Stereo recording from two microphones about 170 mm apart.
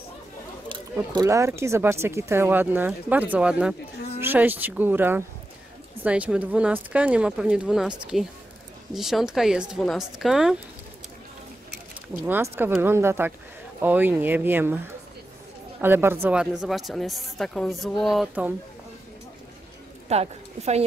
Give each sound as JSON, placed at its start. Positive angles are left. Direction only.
{"t": 1.1, "sound": "speech", "side_deg": -20}
{"t": 12.3, "sound": "speech", "side_deg": -10}
{"t": 15.8, "sound": "speech", "side_deg": -15}
{"t": 20.1, "sound": "speech", "side_deg": -40}